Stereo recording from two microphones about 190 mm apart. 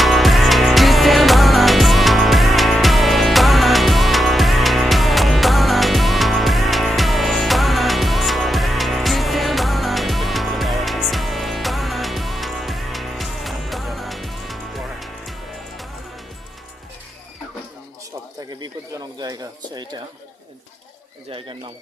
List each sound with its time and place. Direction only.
0.0 s music: centre (ahead or behind)
19.2 s a sound: 20° right (ahead or behind)
21.2 s pigeon: 30° right (ahead or behind)